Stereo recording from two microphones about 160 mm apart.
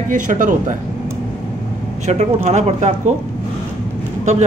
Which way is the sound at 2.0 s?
45° right (ahead or behind).